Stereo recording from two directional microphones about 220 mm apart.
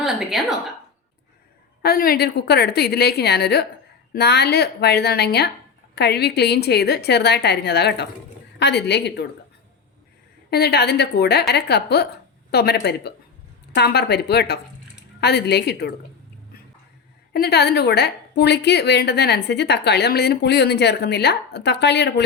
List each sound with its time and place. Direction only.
0.0 s a woman's voice: centre (ahead or behind)
1.8 s a woman's voice: 45° left (ahead or behind)
10.5 s a woman's voice: 45° left (ahead or behind)
17.3 s a woman's voice: 45° left (ahead or behind)